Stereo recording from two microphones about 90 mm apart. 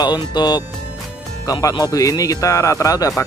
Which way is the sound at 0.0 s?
50° left (ahead or behind).